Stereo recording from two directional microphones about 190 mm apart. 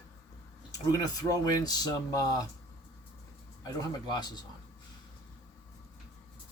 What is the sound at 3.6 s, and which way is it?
Speech, 20° left (ahead or behind).